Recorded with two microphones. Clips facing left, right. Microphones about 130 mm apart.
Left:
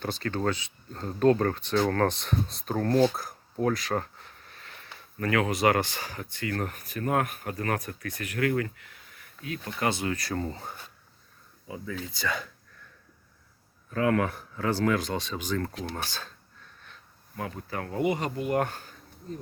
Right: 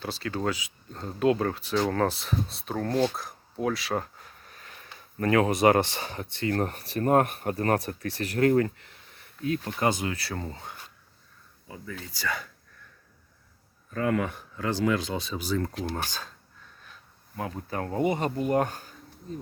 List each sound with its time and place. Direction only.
0.0 s speech: 5° right (ahead or behind)
3.1 s a sound: centre (ahead or behind); by 4.9 s 15° right (ahead or behind)
5.2 s speech: 25° right (ahead or behind)
9.6 s speech: 20° right (ahead or behind)
10.2 s speech: 5° right (ahead or behind)
11.7 s speech: 15° left (ahead or behind)
14.0 s speech: centre (ahead or behind)
17.3 s speech: 25° right (ahead or behind)
18.6 s speech: 15° right (ahead or behind)